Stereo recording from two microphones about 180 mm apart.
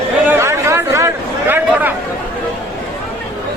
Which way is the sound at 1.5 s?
10° right (ahead or behind).